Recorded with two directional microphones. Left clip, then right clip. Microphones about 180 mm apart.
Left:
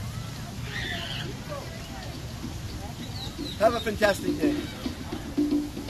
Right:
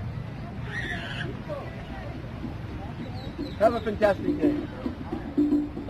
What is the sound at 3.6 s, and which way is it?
Speech, 5° left (ahead or behind).